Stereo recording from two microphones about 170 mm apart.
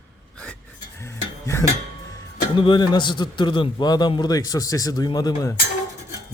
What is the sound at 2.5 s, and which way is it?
Speech, 25° left (ahead or behind).